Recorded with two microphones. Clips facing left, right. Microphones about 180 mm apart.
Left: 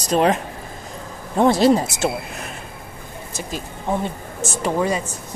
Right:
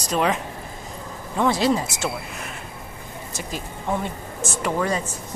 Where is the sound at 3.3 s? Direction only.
25° left (ahead or behind).